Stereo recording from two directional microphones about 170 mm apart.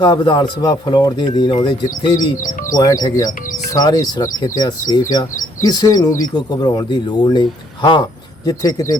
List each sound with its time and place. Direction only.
0.0 s speech: 25° left (ahead or behind)
2.4 s speech: 50° left (ahead or behind)
2.7 s speech: 20° left (ahead or behind)